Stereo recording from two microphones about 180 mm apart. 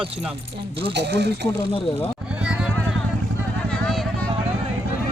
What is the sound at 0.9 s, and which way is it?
Speech, 70° right (ahead or behind).